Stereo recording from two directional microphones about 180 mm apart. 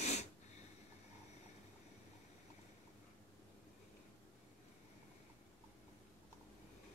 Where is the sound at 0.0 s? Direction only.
40° left (ahead or behind).